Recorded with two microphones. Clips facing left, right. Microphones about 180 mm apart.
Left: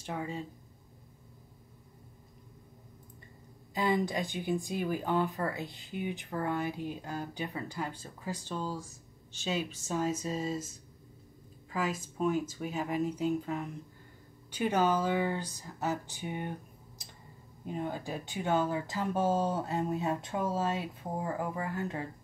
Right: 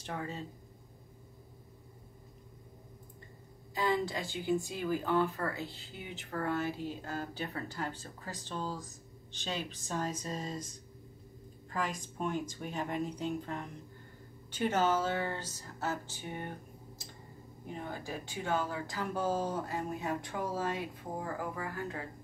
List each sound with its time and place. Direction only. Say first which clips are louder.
0.0 s speech: left 2 dB; 10° left (ahead or behind)
3.7 s speech: left 2 dB; 20° left (ahead or behind)
11.7 s speech: left 3 dB; 5° left (ahead or behind)
17.7 s speech: left 5 dB; 20° left (ahead or behind)